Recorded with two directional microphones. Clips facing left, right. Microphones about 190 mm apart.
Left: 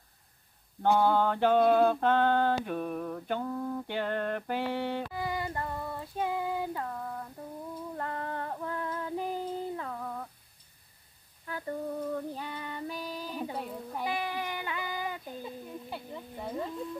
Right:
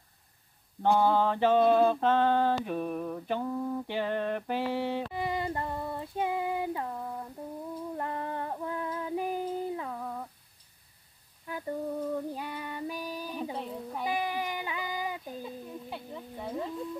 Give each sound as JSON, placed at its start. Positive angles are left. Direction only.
{"t": 0.8, "sound": "mantra", "side_deg": 0}
{"t": 5.1, "sound": "female singing", "side_deg": -25}
{"t": 11.4, "sound": "female singing", "side_deg": -15}
{"t": 13.6, "sound": "a sound", "side_deg": 5}
{"t": 14.0, "sound": "child singing", "side_deg": -15}
{"t": 15.4, "sound": "a sound", "side_deg": 0}